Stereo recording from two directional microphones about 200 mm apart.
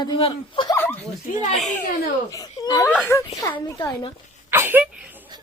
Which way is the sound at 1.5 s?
Centre (ahead or behind).